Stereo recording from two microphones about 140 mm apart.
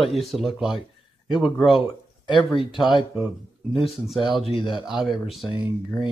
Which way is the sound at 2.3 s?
Centre (ahead or behind).